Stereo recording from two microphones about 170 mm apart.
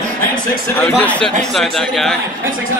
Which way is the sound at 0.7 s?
10° left (ahead or behind).